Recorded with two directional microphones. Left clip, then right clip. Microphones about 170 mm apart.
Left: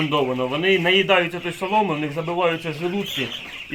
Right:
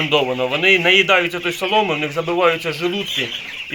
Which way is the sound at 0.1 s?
Centre (ahead or behind).